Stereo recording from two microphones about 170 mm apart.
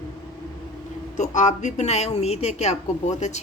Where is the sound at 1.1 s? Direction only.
45° left (ahead or behind).